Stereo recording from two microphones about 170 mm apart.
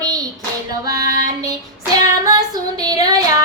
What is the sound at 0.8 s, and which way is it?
Female singing, 20° right (ahead or behind).